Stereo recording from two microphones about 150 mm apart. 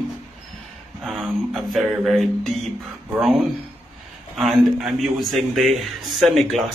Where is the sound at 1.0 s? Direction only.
Centre (ahead or behind).